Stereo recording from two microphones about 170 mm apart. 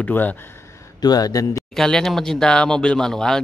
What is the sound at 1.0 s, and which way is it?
Speech, 20° left (ahead or behind).